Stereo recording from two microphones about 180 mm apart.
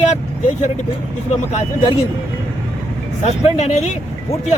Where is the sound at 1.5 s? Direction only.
40° left (ahead or behind).